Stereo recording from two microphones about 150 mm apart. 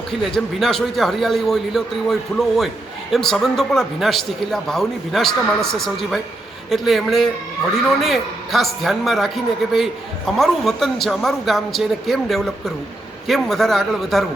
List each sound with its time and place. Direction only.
0.1 s a man's voice: centre (ahead or behind)